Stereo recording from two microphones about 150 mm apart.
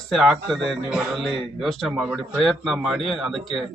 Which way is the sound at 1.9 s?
10° right (ahead or behind).